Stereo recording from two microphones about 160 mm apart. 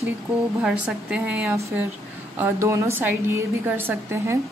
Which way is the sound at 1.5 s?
15° right (ahead or behind).